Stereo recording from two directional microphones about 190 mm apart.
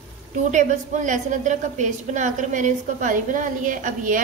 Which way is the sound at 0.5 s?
40° right (ahead or behind).